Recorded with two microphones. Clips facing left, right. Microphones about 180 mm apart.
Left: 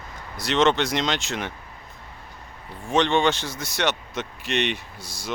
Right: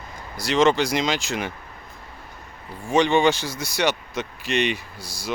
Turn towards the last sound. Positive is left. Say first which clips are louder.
# right 2 dB
turn(degrees=-35)  # may be behind; listen again after turning